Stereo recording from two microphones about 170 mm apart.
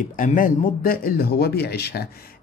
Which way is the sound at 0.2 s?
50° left (ahead or behind).